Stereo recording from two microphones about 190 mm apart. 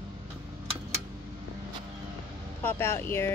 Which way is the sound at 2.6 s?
10° left (ahead or behind).